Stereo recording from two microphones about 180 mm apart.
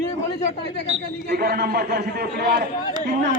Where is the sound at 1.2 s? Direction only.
60° right (ahead or behind).